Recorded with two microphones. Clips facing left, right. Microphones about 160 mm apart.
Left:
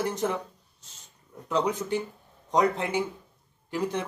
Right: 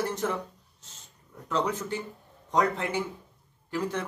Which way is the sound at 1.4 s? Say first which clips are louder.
Left 2 dB; 15° left (ahead or behind).